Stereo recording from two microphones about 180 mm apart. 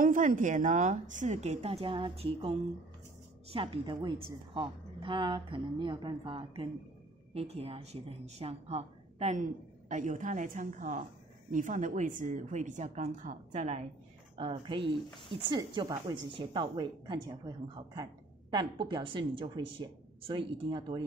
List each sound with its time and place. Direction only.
0.0 s a woman's voice: 50° right (ahead or behind)
14.3 s speech: 30° right (ahead or behind)